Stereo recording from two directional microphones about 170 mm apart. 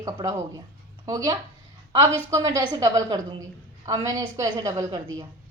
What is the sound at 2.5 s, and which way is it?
A woman's voice, 20° right (ahead or behind).